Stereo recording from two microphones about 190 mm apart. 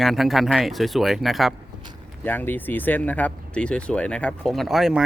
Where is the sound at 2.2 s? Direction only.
10° left (ahead or behind).